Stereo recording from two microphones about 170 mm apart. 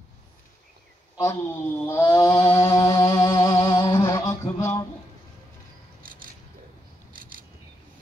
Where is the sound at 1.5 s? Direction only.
15° left (ahead or behind).